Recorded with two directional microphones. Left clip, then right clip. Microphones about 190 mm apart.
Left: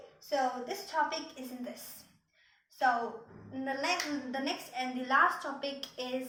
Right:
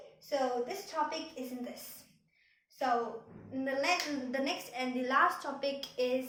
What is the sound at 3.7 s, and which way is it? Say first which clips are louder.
A woman's voice: right 2 dB; 30° right (ahead or behind).